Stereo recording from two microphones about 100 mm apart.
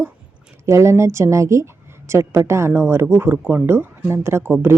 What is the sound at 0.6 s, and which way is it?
Speech, 30° right (ahead or behind).